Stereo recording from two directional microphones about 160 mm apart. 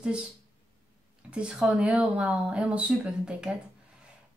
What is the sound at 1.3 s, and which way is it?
Speech, 5° right (ahead or behind).